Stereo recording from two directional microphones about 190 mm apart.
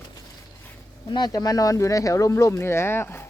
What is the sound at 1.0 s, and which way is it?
Speech, 20° left (ahead or behind).